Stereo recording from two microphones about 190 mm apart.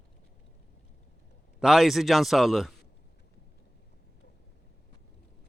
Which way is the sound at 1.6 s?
Centre (ahead or behind).